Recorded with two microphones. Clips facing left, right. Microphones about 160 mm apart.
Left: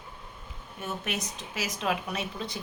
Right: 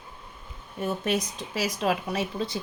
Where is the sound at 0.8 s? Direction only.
35° right (ahead or behind).